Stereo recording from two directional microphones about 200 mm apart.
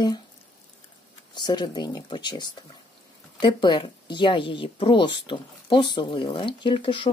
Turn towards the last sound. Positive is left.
turn(degrees=25)  # may be behind; listen again after turning